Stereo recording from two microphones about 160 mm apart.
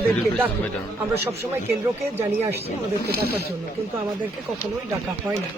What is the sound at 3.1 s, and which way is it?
Speech, 75° right (ahead or behind).